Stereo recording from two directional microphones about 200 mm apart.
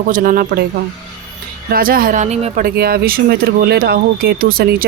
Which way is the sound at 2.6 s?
50° right (ahead or behind).